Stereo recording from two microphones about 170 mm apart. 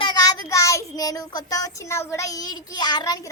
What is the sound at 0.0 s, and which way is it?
Child singing, 25° left (ahead or behind).